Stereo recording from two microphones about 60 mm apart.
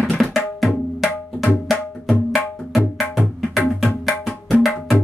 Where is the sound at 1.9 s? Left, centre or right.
Centre.